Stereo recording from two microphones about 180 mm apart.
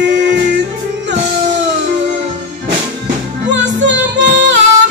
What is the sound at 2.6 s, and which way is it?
Music, 90° right.